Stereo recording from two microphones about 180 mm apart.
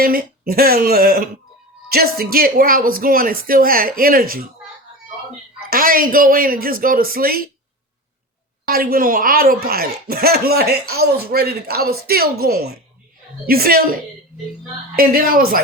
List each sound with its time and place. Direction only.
0.0 s speech: 55° right (ahead or behind)
5.7 s speech: 50° right (ahead or behind)
8.6 s speech: 55° right (ahead or behind)
14.9 s speech: 55° right (ahead or behind)